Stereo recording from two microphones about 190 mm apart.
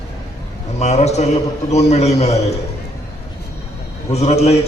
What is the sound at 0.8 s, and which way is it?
A man's voice, 35° left (ahead or behind).